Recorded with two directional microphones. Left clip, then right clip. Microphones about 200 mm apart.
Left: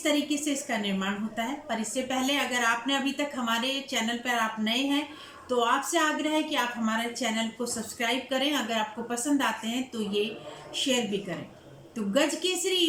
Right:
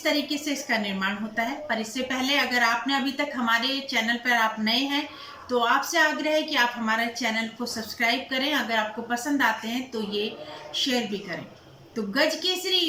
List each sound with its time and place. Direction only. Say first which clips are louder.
0.4 s a woman's voice: right 3 dB; 15° left (ahead or behind)